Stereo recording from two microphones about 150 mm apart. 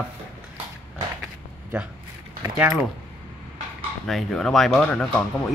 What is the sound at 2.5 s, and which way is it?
Speech, 15° right (ahead or behind).